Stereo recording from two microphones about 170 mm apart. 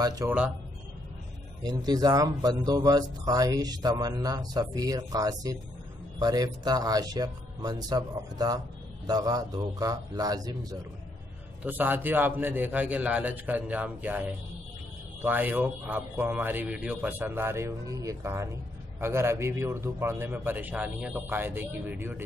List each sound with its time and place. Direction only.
0.0 s speech: 20° right (ahead or behind)
1.6 s speech: 25° right (ahead or behind)
11.6 s a man's voice: 10° right (ahead or behind)